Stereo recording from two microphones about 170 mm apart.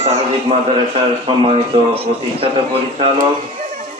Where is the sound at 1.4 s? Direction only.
35° right (ahead or behind).